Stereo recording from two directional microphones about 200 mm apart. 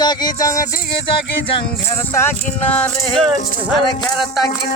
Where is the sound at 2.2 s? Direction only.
10° left (ahead or behind).